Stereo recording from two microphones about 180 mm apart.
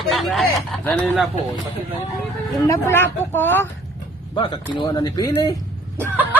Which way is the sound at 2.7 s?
15° left (ahead or behind).